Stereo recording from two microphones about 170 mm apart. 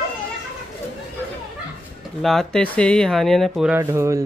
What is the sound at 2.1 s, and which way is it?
Speech, centre (ahead or behind).